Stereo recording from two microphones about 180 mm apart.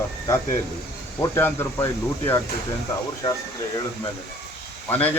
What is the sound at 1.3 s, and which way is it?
Speech, 15° left (ahead or behind).